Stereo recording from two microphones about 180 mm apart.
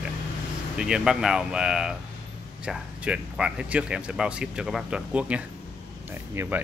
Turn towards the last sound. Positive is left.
turn(degrees=-15)  # may be behind; listen again after turning